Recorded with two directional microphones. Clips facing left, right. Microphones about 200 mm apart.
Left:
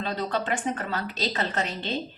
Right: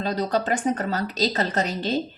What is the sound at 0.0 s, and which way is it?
A woman's voice, 40° right (ahead or behind).